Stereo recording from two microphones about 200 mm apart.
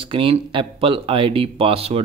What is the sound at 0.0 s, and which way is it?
Speech, 25° right (ahead or behind).